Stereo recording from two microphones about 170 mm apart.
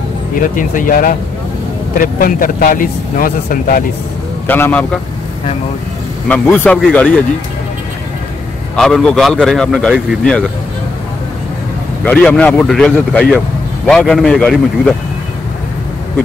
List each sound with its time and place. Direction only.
0.4 s speech: 50° left (ahead or behind)
4.5 s a man's voice: 10° left (ahead or behind)
6.2 s a man's voice: 10° left (ahead or behind)
8.7 s speech: 5° left (ahead or behind)
12.0 s a man's voice: 5° left (ahead or behind)